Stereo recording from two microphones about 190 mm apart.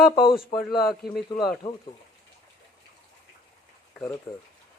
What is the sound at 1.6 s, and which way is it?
Speech, 20° left (ahead or behind).